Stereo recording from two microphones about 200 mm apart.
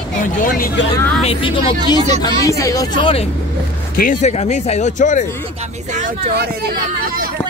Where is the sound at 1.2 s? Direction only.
25° left (ahead or behind).